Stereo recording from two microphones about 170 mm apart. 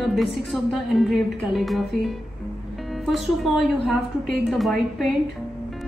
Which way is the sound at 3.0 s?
Centre (ahead or behind).